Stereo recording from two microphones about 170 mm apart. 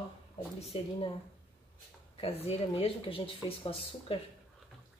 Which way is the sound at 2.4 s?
35° left (ahead or behind).